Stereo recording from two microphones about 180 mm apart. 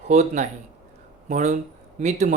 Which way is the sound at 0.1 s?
40° right (ahead or behind).